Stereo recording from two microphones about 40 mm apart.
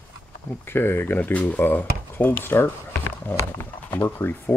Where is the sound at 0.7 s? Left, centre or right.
Left.